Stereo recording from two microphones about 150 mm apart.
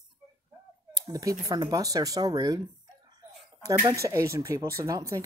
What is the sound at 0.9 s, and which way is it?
Speech, 25° right (ahead or behind).